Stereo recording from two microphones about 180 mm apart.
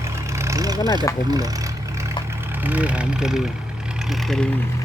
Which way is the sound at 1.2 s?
20° right (ahead or behind).